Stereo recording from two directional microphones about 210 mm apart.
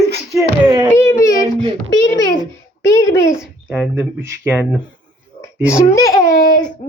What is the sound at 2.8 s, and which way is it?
Speech, 15° left (ahead or behind).